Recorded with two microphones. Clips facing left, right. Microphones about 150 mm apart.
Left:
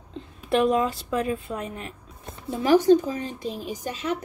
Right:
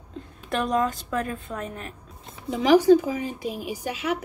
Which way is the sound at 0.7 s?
5° left (ahead or behind).